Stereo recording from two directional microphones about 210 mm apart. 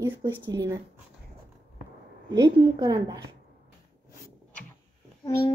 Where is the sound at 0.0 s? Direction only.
10° right (ahead or behind).